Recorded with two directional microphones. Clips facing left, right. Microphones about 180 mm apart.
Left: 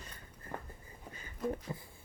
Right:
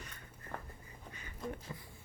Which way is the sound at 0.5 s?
15° left (ahead or behind).